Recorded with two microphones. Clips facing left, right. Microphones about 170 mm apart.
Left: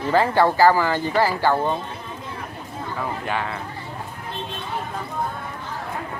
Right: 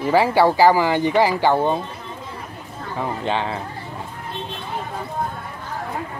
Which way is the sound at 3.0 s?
25° right (ahead or behind).